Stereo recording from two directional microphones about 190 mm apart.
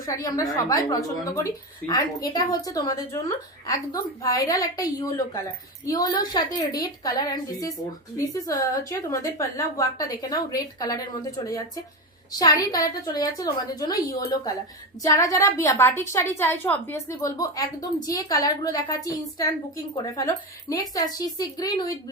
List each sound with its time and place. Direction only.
0.0 s a woman's voice: 20° left (ahead or behind)